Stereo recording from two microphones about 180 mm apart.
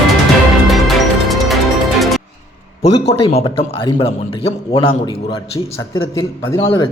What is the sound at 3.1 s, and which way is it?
A man's voice, 30° left (ahead or behind).